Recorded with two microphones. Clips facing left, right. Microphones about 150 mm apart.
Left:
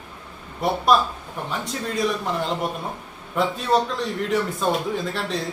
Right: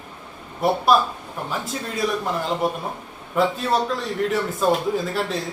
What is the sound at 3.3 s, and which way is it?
A man's voice, centre (ahead or behind).